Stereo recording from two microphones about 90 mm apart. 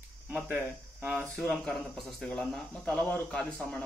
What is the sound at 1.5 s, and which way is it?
Speech, 5° left (ahead or behind).